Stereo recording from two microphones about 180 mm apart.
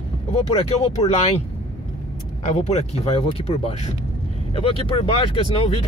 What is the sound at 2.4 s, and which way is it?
Speech, 40° left (ahead or behind).